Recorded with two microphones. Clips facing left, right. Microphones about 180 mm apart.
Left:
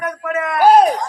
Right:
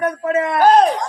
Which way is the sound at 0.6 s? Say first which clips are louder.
Left 2 dB; 10° left (ahead or behind).